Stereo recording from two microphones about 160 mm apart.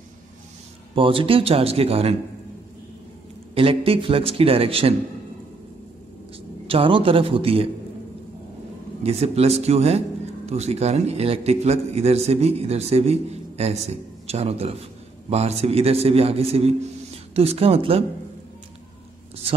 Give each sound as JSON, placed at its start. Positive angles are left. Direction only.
{"t": 0.9, "sound": "a man's voice", "side_deg": -35}
{"t": 3.5, "sound": "a man's voice", "side_deg": -35}
{"t": 6.7, "sound": "a man's voice", "side_deg": -35}
{"t": 9.0, "sound": "a man's voice", "side_deg": -40}